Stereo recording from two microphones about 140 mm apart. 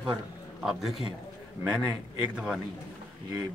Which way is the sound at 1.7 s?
5° right (ahead or behind).